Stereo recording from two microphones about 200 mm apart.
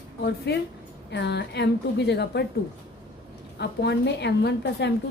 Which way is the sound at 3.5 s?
55° left (ahead or behind).